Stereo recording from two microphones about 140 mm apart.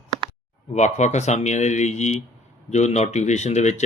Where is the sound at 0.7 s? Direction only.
55° left (ahead or behind).